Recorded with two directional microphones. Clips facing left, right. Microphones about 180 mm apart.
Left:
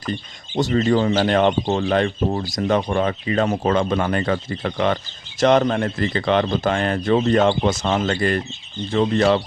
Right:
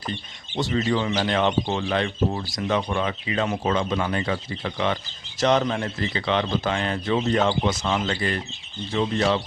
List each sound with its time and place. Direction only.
0.1 s speech: 45° left (ahead or behind)